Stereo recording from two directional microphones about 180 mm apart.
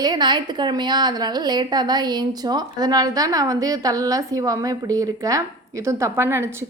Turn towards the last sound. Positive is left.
turn(degrees=-15)  # may be behind; listen again after turning